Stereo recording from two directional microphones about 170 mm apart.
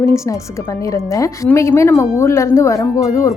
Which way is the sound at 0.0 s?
15° left (ahead or behind).